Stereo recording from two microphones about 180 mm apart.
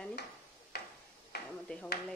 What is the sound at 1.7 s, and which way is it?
Speech, 5° left (ahead or behind).